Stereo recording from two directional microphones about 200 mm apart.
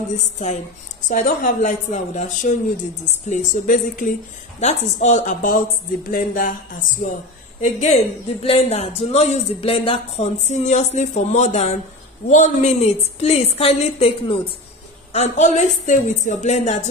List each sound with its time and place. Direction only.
0.1 s speech: 35° left (ahead or behind)
7.6 s speech: 35° left (ahead or behind)